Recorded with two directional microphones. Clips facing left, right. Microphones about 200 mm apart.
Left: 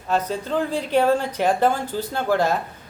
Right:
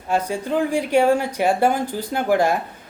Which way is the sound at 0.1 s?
10° right (ahead or behind).